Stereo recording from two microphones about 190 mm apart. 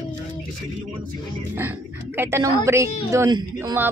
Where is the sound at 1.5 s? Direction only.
10° right (ahead or behind).